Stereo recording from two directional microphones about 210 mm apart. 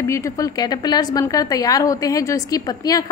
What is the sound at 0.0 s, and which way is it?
A woman's voice, 15° left (ahead or behind).